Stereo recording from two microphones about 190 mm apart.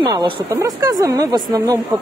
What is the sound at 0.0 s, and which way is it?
A woman's voice, 20° right (ahead or behind).